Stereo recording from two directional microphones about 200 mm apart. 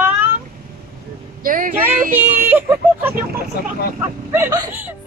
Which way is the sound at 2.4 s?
10° right (ahead or behind).